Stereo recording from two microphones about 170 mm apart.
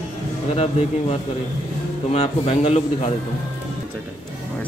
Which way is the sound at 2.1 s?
35° left (ahead or behind).